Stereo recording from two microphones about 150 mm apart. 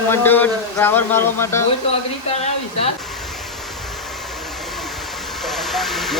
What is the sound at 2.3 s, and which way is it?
Speech, 45° left (ahead or behind).